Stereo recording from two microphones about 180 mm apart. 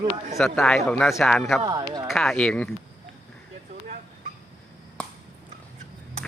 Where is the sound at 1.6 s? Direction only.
20° right (ahead or behind).